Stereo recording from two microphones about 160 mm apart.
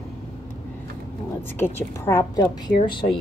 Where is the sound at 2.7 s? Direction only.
30° left (ahead or behind).